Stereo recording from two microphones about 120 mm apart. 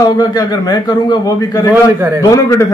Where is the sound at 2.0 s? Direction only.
20° right (ahead or behind).